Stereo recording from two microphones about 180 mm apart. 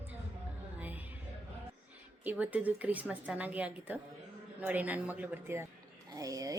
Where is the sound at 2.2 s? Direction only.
10° right (ahead or behind).